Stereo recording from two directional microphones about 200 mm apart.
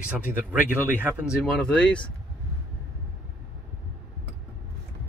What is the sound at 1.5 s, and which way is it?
Speech, 5° left (ahead or behind).